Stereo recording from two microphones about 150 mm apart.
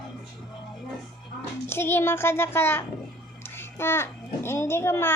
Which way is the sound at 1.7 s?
15° left (ahead or behind).